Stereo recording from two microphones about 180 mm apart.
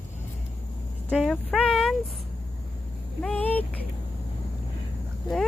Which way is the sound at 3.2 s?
10° left (ahead or behind).